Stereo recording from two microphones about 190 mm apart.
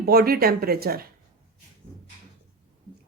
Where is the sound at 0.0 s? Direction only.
55° right (ahead or behind).